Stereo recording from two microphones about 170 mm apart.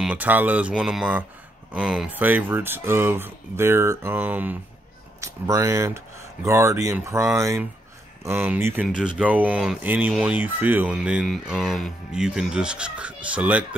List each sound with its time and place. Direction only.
0.0 s speech: 10° right (ahead or behind)